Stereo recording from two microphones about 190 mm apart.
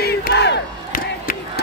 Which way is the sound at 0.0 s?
60° left (ahead or behind).